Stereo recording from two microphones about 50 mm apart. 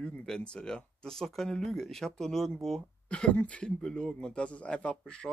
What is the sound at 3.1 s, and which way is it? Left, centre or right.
Speech, centre.